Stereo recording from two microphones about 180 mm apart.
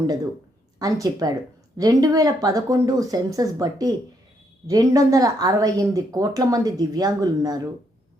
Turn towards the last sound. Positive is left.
turn(degrees=-20)  # may be behind; listen again after turning